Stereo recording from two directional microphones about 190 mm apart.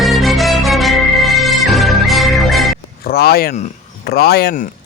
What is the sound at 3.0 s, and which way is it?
Speech, 55° left (ahead or behind).